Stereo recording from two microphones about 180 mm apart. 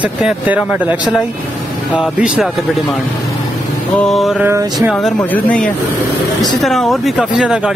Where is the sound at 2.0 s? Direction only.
5° right (ahead or behind).